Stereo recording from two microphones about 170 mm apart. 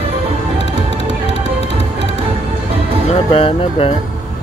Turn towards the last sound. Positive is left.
turn(degrees=35)  # may be behind; listen again after turning